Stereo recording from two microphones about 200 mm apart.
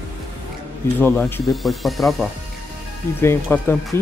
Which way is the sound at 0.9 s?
10° left (ahead or behind).